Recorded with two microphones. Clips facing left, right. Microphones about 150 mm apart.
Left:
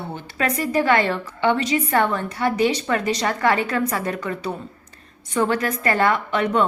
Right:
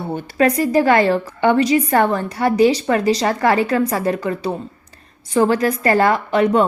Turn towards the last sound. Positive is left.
turn(degrees=-35)  # may be behind; listen again after turning